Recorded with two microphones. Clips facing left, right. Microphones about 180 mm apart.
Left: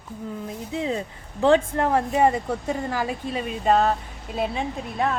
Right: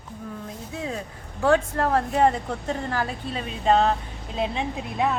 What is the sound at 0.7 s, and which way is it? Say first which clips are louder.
A woman's voice: left 5 dB; 20° left (ahead or behind).